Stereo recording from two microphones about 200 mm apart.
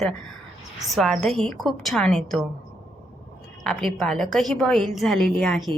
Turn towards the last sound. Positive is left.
turn(degrees=5)  # may be behind; listen again after turning